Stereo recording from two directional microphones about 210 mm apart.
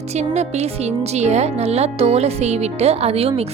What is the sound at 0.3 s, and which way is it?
Speech, 30° right (ahead or behind).